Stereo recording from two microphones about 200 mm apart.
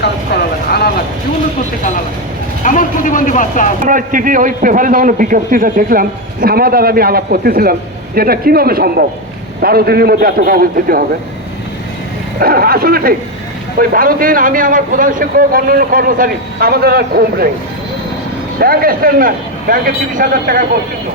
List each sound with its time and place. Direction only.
0.7 s a sound: 50° left (ahead or behind)
2.6 s speech: 40° left (ahead or behind)
3.8 s a man's voice: 40° right (ahead or behind)
12.4 s a man's voice: 50° right (ahead or behind)
18.6 s a man's voice: 50° right (ahead or behind)